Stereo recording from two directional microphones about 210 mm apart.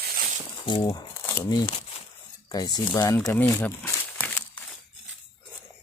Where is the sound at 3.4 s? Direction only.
10° left (ahead or behind).